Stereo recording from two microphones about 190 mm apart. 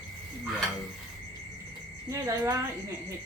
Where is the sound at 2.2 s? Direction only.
15° right (ahead or behind).